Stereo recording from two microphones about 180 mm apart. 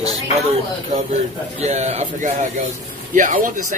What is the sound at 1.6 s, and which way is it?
Speech, 40° right (ahead or behind).